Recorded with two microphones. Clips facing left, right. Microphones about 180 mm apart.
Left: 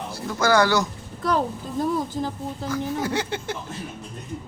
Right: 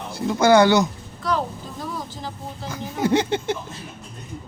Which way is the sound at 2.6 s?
20° right (ahead or behind).